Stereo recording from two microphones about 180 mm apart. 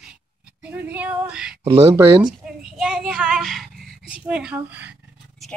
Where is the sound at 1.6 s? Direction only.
20° right (ahead or behind).